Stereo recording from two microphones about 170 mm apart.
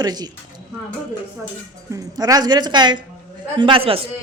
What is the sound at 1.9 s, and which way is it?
Speech, 20° right (ahead or behind).